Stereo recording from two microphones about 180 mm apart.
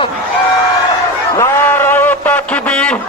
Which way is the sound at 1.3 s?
15° left (ahead or behind).